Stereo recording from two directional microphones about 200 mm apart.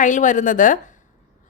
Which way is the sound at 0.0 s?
40° left (ahead or behind).